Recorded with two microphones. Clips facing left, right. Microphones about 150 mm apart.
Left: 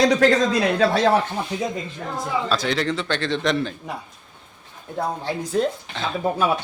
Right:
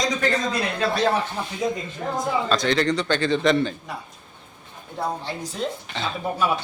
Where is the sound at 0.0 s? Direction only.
80° left.